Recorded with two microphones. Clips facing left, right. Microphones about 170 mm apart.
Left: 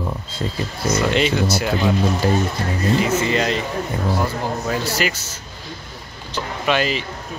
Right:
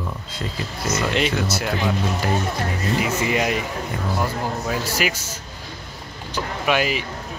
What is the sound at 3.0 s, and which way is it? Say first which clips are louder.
Speech: left 3 dB; 10° right (ahead or behind).